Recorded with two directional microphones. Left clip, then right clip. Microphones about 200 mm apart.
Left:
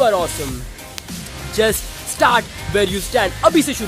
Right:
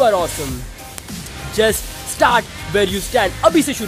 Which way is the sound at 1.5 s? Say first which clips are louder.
Right 1 dB; centre (ahead or behind).